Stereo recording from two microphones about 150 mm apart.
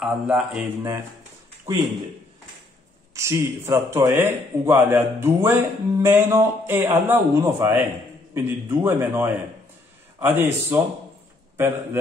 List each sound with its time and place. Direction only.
0.0 s a man's voice: 5° right (ahead or behind)
3.2 s a man's voice: 20° right (ahead or behind)